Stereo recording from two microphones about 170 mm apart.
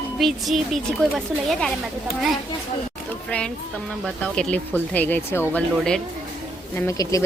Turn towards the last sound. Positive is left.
turn(degrees=20)  # may be behind; listen again after turning